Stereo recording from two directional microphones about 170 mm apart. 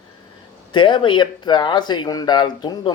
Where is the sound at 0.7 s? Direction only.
30° left (ahead or behind).